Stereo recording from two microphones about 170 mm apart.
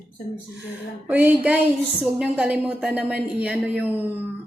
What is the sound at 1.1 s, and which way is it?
A woman's voice, 10° right (ahead or behind).